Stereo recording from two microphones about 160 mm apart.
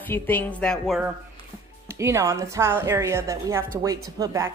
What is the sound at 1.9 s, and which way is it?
A woman's voice, 20° right (ahead or behind).